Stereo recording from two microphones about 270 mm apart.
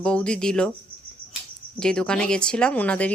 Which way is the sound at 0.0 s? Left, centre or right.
Centre.